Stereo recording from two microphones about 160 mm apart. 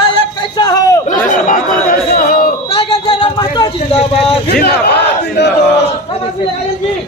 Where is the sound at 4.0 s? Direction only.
40° left (ahead or behind).